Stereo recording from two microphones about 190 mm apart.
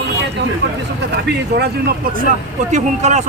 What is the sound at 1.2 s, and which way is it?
Speech, 60° right (ahead or behind).